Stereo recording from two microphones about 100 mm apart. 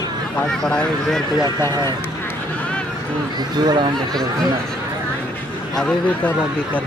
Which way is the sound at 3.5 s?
45° right (ahead or behind).